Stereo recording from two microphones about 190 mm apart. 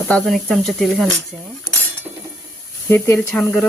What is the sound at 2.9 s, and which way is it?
Stir, 10° left (ahead or behind).